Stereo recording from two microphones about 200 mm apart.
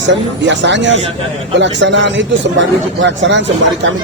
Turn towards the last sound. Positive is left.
turn(degrees=-65)  # may be behind; listen again after turning